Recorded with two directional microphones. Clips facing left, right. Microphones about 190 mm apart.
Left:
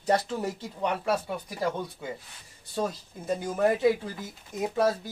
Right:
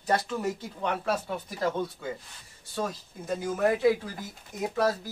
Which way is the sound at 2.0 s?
15° left (ahead or behind).